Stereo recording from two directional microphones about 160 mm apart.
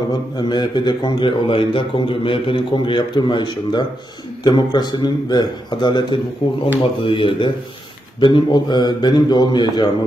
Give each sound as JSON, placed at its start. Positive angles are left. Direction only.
{"t": 0.4, "sound": "a man's voice", "side_deg": 30}